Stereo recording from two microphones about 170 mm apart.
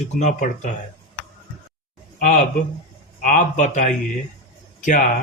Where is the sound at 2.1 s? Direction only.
50° left (ahead or behind).